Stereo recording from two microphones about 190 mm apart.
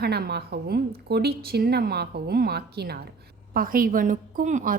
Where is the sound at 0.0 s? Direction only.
55° right (ahead or behind).